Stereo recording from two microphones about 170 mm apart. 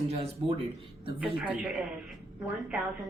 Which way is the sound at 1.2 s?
5° right (ahead or behind).